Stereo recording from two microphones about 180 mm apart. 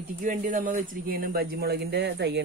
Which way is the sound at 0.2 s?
45° right (ahead or behind).